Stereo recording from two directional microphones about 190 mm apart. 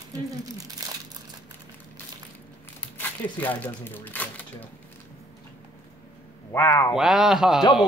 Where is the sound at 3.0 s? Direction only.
10° left (ahead or behind).